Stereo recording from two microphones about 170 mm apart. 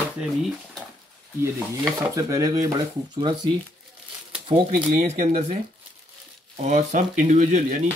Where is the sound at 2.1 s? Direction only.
20° right (ahead or behind).